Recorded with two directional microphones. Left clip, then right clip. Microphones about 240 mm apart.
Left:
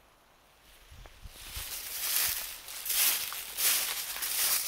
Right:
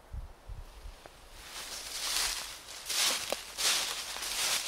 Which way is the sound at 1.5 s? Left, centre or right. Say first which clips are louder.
Right 1 dB; left.